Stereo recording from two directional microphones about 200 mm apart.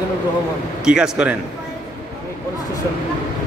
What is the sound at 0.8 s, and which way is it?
Speech, 5° right (ahead or behind).